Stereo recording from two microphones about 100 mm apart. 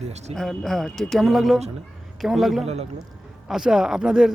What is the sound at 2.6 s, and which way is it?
Speech, 90° right.